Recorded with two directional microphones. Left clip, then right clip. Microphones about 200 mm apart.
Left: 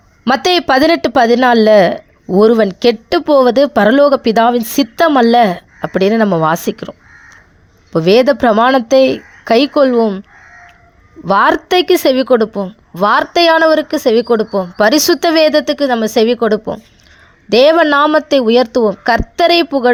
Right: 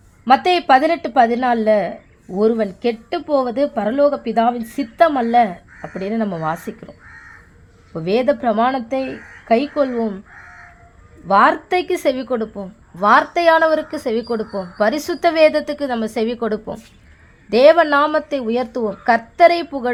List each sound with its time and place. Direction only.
0.3 s speech: 45° left (ahead or behind)
7.9 s a woman's voice: 40° left (ahead or behind)
11.3 s a woman's voice: 45° left (ahead or behind)